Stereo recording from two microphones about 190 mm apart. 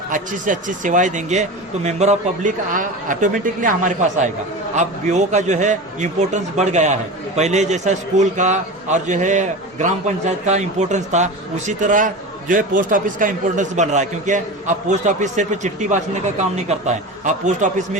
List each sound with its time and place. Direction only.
0.1 s a man's voice: 45° right (ahead or behind)